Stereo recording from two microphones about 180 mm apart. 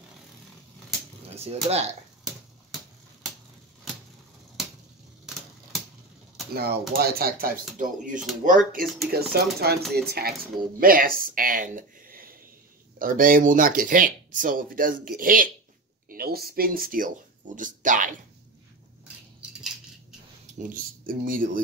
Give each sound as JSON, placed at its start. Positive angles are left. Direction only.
{"t": 1.3, "sound": "speech", "side_deg": -35}
{"t": 6.5, "sound": "speech", "side_deg": -60}
{"t": 9.1, "sound": "speech", "side_deg": -60}
{"t": 20.7, "sound": "speech", "side_deg": -50}